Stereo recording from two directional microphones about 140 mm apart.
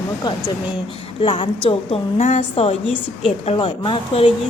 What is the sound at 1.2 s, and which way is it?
Speech, 35° left (ahead or behind).